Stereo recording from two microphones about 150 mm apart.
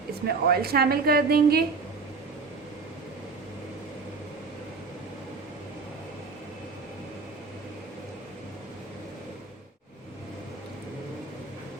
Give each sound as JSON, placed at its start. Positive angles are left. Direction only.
{"t": 0.3, "sound": "a woman's voice", "side_deg": -90}